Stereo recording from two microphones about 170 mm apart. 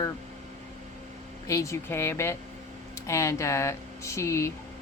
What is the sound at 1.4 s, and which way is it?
Speech, 20° left (ahead or behind).